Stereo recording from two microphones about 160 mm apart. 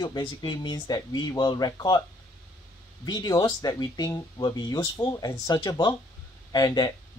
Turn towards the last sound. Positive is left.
turn(degrees=25)  # may be behind; listen again after turning